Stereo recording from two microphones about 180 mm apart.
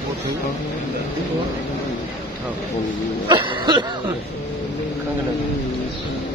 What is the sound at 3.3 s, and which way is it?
Throat clearing, 25° right (ahead or behind).